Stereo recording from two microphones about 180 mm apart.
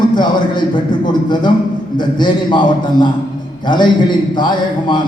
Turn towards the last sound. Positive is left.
turn(degrees=25)  # may be behind; listen again after turning